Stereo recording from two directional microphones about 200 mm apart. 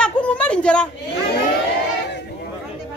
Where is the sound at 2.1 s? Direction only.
60° left (ahead or behind).